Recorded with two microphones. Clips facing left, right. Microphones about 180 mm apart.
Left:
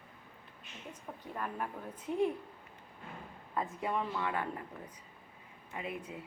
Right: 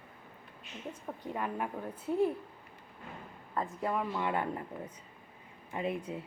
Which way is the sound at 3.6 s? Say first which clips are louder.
Right 2 dB; centre (ahead or behind).